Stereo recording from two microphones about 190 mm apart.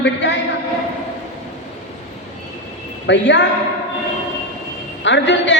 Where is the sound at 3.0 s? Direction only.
65° left (ahead or behind).